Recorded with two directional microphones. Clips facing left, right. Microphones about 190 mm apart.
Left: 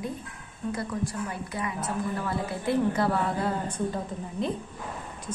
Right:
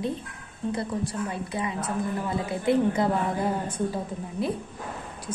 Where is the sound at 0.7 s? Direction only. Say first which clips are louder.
Right 2 dB; 30° right (ahead or behind).